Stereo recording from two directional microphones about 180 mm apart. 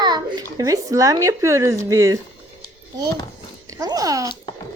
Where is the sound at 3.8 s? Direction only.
20° right (ahead or behind).